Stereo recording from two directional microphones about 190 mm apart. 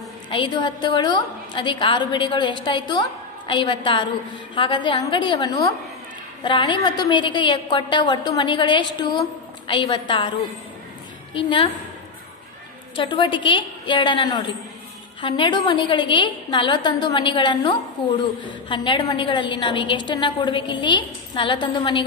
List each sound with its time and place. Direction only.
0.3 s a woman's voice: 25° left (ahead or behind)
11.3 s a woman's voice: 25° left (ahead or behind)
12.9 s a woman's voice: 25° left (ahead or behind)